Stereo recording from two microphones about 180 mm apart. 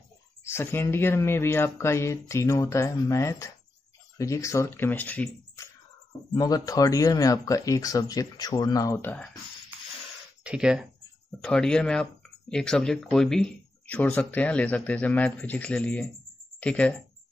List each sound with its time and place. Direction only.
0.4 s speech: 15° left (ahead or behind)
6.3 s speech: 20° left (ahead or behind)
10.4 s speech: 5° right (ahead or behind)